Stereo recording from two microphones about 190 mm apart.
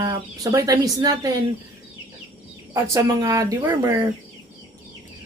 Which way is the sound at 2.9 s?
20° right (ahead or behind).